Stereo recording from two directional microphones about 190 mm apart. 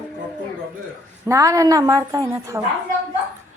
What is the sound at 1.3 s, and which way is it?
A woman's voice, 15° right (ahead or behind).